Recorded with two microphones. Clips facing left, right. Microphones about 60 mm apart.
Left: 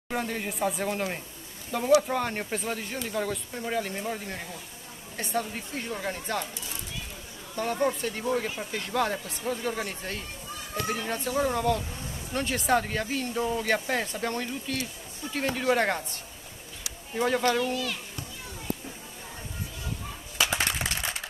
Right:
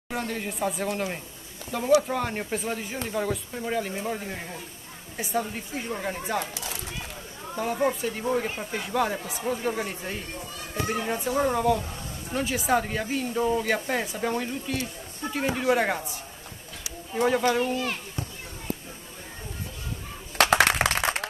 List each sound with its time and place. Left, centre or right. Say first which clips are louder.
0.1 s speech: even; centre
6.4 s speech: right 4 dB; right
7.5 s speech: right 1 dB; centre
17.7 s a child's voice: right 3 dB; right
20.3 s a sound: right 8 dB; right